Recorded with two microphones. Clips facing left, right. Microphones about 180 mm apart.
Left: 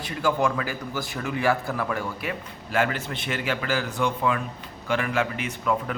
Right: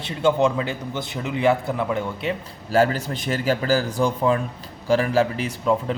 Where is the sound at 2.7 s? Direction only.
35° right (ahead or behind).